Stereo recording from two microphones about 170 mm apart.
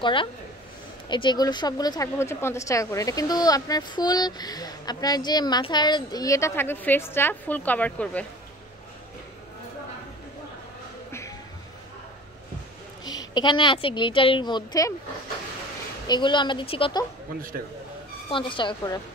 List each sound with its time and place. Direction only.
0.0 s speech: 30° left (ahead or behind); by 8.3 s 10° left (ahead or behind)
11.1 s a sound: 15° left (ahead or behind)
13.0 s speech: 25° left (ahead or behind)
16.1 s speech: 25° left (ahead or behind)
18.3 s speech: 30° left (ahead or behind)